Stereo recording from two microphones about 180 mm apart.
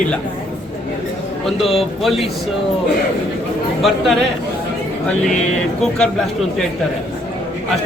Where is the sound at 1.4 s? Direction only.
Centre (ahead or behind).